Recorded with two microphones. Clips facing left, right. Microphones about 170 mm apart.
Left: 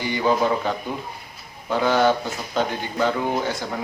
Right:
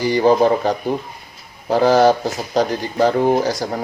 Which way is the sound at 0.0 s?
40° right (ahead or behind).